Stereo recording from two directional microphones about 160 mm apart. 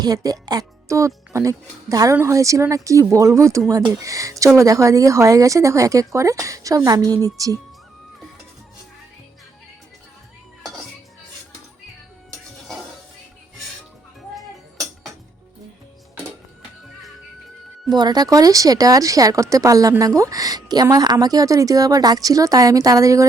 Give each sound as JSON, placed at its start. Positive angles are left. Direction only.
{"t": 0.0, "sound": "speech", "side_deg": -25}
{"t": 17.8, "sound": "speech", "side_deg": -25}